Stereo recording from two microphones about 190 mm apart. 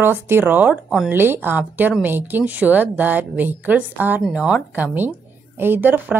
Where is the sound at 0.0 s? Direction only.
10° right (ahead or behind).